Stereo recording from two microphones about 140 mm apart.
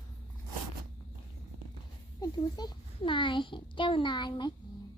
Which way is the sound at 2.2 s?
30° left (ahead or behind).